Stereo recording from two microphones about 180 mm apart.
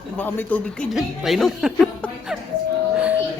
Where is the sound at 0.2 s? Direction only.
10° left (ahead or behind).